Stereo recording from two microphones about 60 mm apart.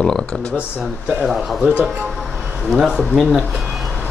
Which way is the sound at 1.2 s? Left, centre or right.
Centre.